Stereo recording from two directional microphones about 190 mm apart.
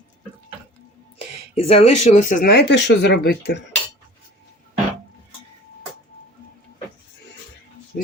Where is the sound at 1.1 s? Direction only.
30° left (ahead or behind); by 3.6 s 60° left (ahead or behind).